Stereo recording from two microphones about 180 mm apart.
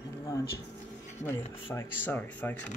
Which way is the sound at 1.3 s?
10° left (ahead or behind).